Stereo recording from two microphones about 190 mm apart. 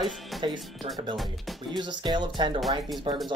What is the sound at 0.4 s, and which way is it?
Speech, 25° right (ahead or behind).